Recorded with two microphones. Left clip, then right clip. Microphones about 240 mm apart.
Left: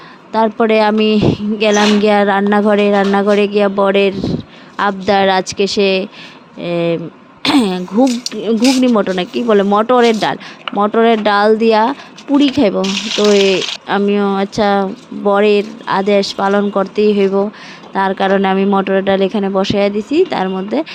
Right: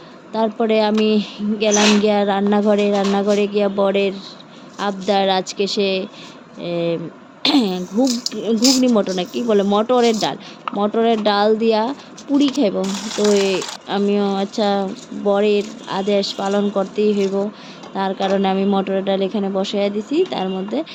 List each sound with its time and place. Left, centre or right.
0.3 s speech: left